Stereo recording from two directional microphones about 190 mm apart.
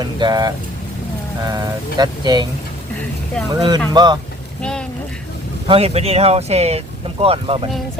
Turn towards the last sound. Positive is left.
turn(degrees=-30)  # may be behind; listen again after turning